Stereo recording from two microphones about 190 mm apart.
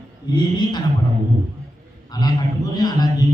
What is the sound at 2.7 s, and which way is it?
Speech, 20° left (ahead or behind).